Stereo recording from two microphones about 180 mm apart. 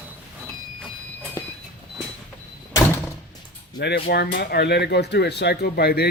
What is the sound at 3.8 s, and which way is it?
Speech, 65° left (ahead or behind).